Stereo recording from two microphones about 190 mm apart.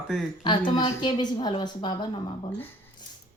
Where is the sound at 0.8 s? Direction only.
25° left (ahead or behind).